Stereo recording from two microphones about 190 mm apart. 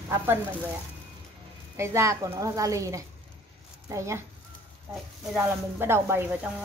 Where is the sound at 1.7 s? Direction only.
15° right (ahead or behind).